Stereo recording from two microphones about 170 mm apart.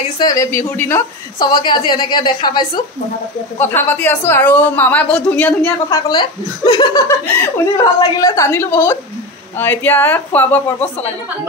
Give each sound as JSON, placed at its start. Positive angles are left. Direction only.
{"t": 0.2, "sound": "a woman's voice", "side_deg": 20}
{"t": 1.5, "sound": "a woman's voice", "side_deg": 30}
{"t": 3.5, "sound": "a woman's voice", "side_deg": 15}
{"t": 5.9, "sound": "a woman's voice", "side_deg": 25}